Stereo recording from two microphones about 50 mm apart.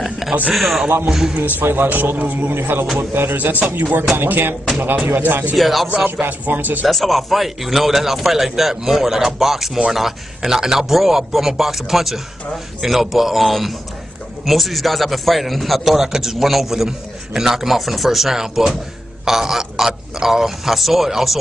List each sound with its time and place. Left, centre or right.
0.0 s a sound: centre
0.5 s a man's voice: centre
1.3 s a man's voice: right
5.6 s a man's voice: centre
6.2 s a man's voice: right
6.9 s a man's voice: centre